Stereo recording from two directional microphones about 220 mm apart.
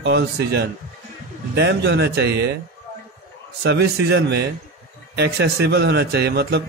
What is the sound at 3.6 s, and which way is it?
A man's voice, 50° right (ahead or behind).